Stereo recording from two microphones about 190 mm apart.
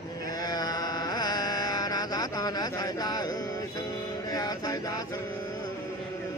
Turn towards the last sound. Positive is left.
turn(degrees=20)  # may be behind; listen again after turning